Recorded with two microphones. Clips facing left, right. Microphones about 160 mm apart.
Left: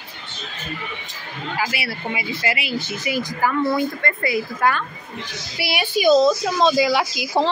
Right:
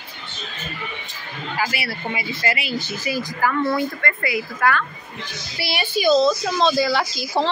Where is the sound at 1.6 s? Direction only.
25° left (ahead or behind).